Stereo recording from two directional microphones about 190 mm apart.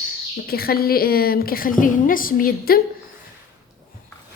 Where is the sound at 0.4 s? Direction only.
55° left (ahead or behind).